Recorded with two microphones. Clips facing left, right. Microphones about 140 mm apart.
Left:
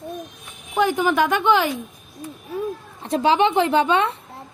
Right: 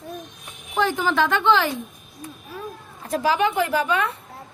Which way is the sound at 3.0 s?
25° left (ahead or behind).